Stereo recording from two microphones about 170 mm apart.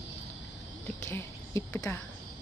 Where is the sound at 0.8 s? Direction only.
15° left (ahead or behind).